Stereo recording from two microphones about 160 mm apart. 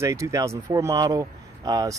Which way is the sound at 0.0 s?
20° right (ahead or behind).